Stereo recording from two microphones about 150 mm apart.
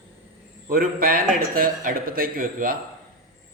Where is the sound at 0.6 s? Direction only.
75° right (ahead or behind).